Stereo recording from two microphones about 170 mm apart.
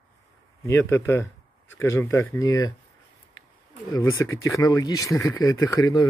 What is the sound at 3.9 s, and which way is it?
Speech, 20° left (ahead or behind).